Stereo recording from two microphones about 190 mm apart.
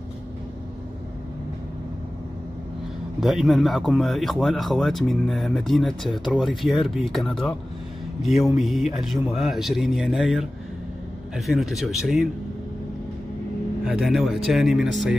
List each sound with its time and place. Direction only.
3.2 s speech: centre (ahead or behind)
13.8 s speech: 5° right (ahead or behind)